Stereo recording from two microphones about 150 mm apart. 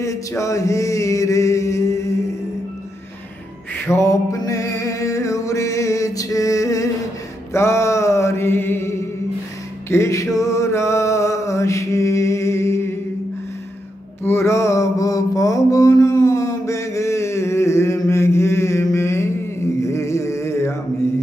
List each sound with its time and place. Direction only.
0.0 s a sound: 20° left (ahead or behind)
3.7 s music: 15° left (ahead or behind)
7.5 s mantra: 20° left (ahead or behind)
9.8 s music: 20° left (ahead or behind)
14.2 s mantra: 15° left (ahead or behind)
19.8 s a sound: 20° left (ahead or behind)